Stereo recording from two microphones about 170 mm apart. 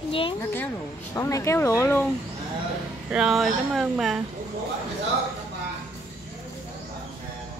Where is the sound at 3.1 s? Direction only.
5° right (ahead or behind).